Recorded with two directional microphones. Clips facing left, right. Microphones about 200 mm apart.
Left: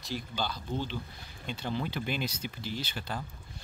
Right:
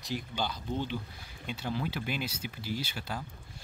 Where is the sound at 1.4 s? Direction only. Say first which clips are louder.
Even; 5° right (ahead or behind).